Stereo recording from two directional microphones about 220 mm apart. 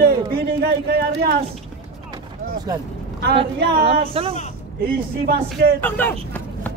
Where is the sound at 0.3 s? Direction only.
45° right (ahead or behind).